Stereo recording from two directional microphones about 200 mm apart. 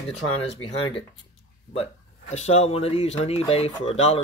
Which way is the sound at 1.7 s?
30° left (ahead or behind).